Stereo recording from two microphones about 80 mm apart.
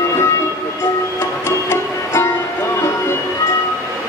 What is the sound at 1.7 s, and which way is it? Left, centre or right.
Music, left.